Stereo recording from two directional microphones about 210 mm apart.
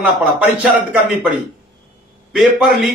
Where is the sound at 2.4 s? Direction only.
Centre (ahead or behind).